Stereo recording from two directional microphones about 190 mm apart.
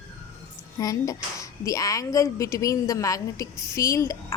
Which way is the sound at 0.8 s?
20° left (ahead or behind).